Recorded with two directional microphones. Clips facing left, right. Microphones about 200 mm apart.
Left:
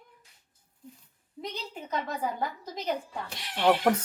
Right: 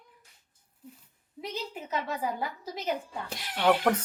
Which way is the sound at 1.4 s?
5° right (ahead or behind).